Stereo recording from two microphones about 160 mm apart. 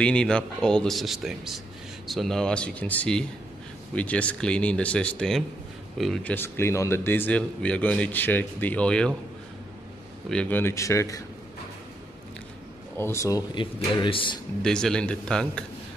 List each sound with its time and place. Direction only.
0.0 s a man's voice: 5° left (ahead or behind)
10.3 s a man's voice: 10° left (ahead or behind)
12.9 s speech: 15° left (ahead or behind)
14.0 s speech: 30° left (ahead or behind)
14.6 s speech: 5° left (ahead or behind)